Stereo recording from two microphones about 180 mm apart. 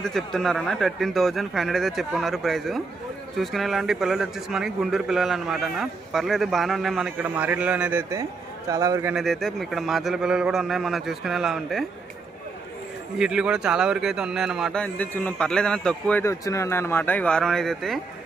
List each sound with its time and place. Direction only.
0.0 s a man's voice: centre (ahead or behind); by 9.1 s 15° right (ahead or behind)
9.1 s a man's voice: centre (ahead or behind)
13.1 s a man's voice: 5° right (ahead or behind)